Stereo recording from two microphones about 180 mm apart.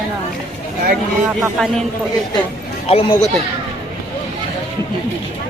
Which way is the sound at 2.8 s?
35° left (ahead or behind).